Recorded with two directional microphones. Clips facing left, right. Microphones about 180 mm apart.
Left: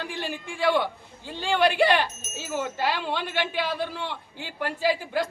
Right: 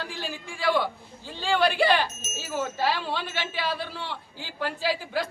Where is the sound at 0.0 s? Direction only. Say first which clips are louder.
Left 2 dB; 20° left (ahead or behind).